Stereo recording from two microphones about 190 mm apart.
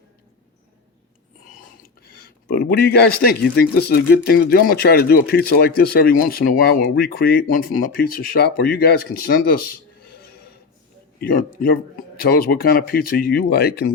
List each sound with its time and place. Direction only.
1.8 s speech: 55° left (ahead or behind)